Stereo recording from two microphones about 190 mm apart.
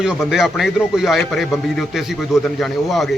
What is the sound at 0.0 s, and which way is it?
A man's voice, 5° right (ahead or behind).